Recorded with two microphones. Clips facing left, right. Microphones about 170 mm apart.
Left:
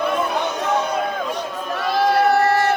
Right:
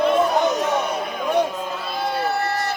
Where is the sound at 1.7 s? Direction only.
80° left.